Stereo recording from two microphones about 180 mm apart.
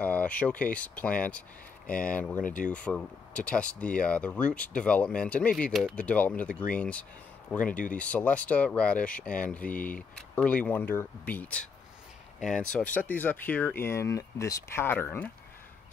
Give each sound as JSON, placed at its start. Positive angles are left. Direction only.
{"t": 0.0, "sound": "speech", "side_deg": 10}
{"t": 1.9, "sound": "speech", "side_deg": 50}
{"t": 2.7, "sound": "speech", "side_deg": 5}